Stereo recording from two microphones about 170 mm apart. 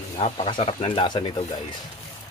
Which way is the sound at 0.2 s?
40° left (ahead or behind).